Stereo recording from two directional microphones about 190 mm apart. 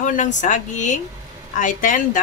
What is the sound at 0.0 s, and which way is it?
Speech, 40° left (ahead or behind).